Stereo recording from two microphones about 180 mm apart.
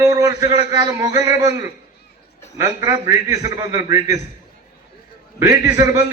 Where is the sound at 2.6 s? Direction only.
20° right (ahead or behind).